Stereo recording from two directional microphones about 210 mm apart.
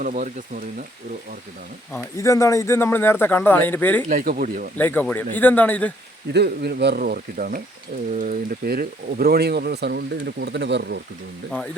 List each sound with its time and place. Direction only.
0.0 s speech: 40° right (ahead or behind)
1.9 s speech: 15° left (ahead or behind)
4.1 s speech: 40° right (ahead or behind)
4.8 s speech: 10° left (ahead or behind)
6.3 s speech: 50° right (ahead or behind)
11.5 s speech: 5° left (ahead or behind)